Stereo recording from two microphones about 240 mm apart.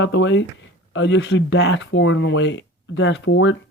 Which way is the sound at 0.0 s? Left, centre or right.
Left.